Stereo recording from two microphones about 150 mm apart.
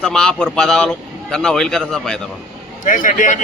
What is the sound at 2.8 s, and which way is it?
Speech, 60° left (ahead or behind).